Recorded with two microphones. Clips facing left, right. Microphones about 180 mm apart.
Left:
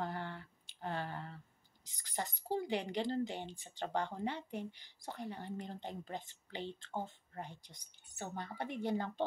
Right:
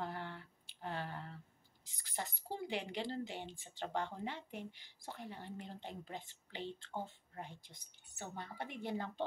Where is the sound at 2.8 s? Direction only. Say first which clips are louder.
Left 5 dB; 5° right (ahead or behind).